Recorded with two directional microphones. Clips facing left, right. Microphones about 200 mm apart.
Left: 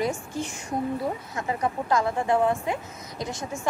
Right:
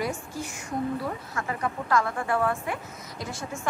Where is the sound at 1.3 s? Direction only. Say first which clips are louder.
Left 2 dB; 20° left (ahead or behind).